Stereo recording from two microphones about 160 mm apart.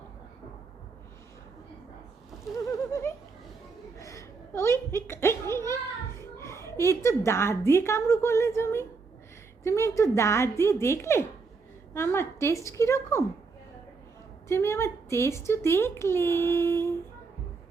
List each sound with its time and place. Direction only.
2.6 s a sound: 20° left (ahead or behind)
6.3 s a woman's voice: 20° left (ahead or behind)
14.4 s a woman's voice: 15° left (ahead or behind)